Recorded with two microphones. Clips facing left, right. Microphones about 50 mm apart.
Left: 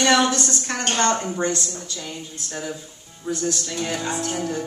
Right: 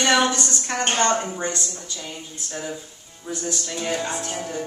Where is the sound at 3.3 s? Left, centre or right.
Centre.